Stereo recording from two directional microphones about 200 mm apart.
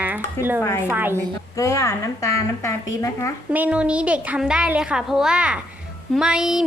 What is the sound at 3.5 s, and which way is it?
A woman's voice, 5° right (ahead or behind).